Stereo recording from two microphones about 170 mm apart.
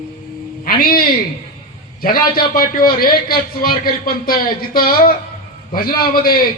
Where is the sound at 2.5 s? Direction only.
60° left (ahead or behind).